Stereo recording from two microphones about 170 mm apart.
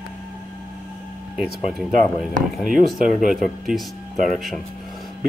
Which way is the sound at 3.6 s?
Centre (ahead or behind).